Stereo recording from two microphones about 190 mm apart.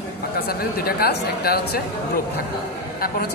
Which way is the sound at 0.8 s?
55° left (ahead or behind).